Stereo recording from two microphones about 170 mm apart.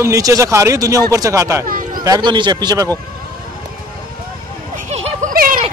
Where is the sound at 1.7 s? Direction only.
55° right (ahead or behind).